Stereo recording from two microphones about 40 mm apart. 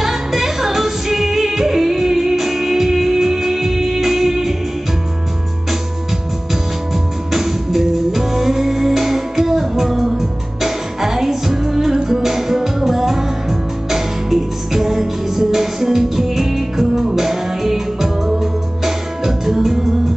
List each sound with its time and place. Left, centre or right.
0.0 s music: centre
7.3 s music: centre